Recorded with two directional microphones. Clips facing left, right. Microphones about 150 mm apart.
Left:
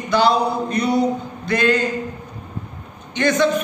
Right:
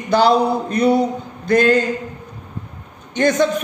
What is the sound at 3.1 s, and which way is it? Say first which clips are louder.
Speech: right 2 dB; 45° right (ahead or behind).